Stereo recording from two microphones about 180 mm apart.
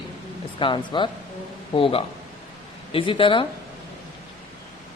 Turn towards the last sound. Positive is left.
turn(degrees=30)  # may be behind; listen again after turning